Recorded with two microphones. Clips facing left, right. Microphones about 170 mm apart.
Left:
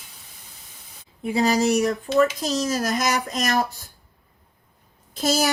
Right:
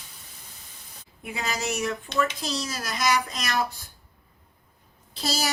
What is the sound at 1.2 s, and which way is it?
Speech, 35° left (ahead or behind).